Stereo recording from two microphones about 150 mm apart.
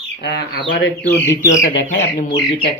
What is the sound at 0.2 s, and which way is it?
Speech, 90° left.